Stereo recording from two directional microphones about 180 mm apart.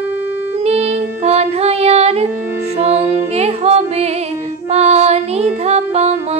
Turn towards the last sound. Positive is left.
turn(degrees=-35)  # may be behind; listen again after turning